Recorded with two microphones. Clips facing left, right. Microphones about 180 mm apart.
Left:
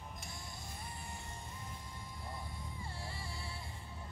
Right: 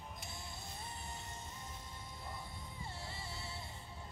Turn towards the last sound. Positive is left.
turn(degrees=-25)  # may be behind; listen again after turning